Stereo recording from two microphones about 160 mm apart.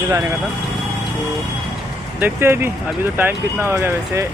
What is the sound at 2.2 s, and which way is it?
Speech, 15° right (ahead or behind).